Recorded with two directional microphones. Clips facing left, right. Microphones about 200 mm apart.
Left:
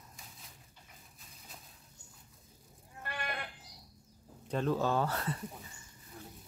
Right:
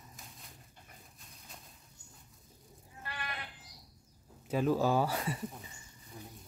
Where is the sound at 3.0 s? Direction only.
50° left (ahead or behind).